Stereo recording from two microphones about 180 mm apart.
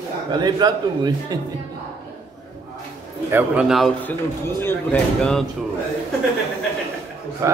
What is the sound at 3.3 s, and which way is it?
A man's voice, 5° right (ahead or behind).